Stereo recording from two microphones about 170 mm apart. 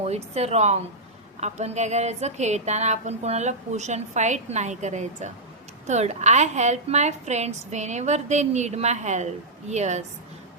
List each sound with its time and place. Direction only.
0.0 s a woman's voice: 40° right (ahead or behind)